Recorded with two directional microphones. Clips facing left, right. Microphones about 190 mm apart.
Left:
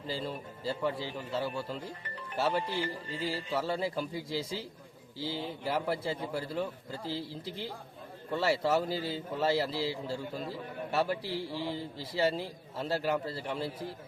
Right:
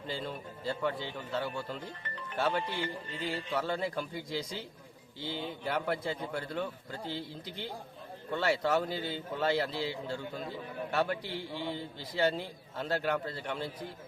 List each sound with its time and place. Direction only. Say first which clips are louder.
0.1 s a man's voice: left 2 dB; 5° left (ahead or behind)
2.8 s music: left 1 dB; 35° left (ahead or behind)
3.2 s a man's voice: left 1 dB; 5° left (ahead or behind)